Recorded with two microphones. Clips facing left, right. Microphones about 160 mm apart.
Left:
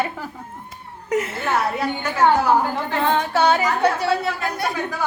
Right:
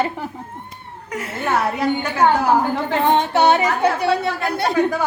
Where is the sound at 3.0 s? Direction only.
20° right (ahead or behind).